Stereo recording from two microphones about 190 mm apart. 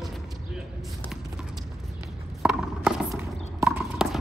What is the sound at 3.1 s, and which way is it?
Horse, 15° right (ahead or behind).